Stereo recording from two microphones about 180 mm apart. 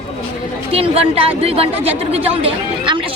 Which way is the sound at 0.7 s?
30° right (ahead or behind).